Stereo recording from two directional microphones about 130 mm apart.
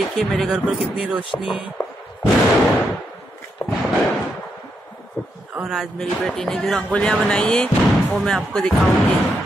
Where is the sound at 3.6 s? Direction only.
35° left (ahead or behind).